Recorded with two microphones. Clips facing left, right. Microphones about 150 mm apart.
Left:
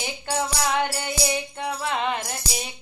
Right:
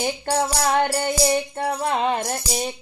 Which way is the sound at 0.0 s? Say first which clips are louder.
Right 5 dB; 45° right (ahead or behind).